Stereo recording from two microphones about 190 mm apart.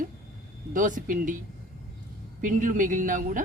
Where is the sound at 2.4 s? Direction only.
45° right (ahead or behind).